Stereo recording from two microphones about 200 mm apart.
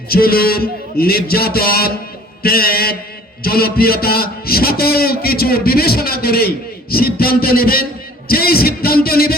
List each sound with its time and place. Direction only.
0.1 s a man's voice: 50° left (ahead or behind)